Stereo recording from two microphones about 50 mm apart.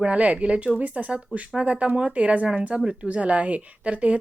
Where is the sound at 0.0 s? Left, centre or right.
Right.